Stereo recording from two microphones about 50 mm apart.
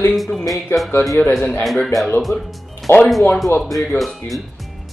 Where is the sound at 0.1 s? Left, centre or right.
Centre.